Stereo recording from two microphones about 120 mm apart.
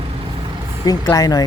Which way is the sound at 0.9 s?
30° left (ahead or behind).